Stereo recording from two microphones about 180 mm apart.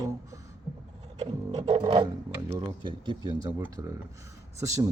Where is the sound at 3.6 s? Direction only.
10° right (ahead or behind).